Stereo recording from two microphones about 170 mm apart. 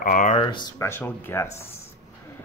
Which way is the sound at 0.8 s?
15° left (ahead or behind).